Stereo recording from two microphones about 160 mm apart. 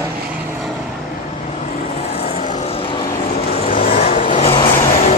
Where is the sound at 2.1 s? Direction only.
40° left (ahead or behind).